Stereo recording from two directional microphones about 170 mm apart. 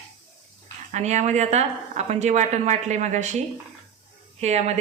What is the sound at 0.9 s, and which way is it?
A woman's voice, 45° right (ahead or behind).